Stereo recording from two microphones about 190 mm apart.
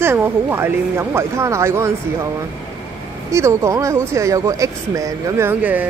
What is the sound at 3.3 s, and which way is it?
A woman's voice, 15° right (ahead or behind).